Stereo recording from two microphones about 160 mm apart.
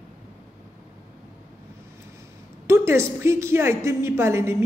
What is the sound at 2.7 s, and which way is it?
A woman's voice, 15° right (ahead or behind).